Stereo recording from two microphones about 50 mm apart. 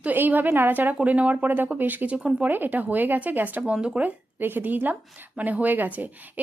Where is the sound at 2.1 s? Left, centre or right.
Right.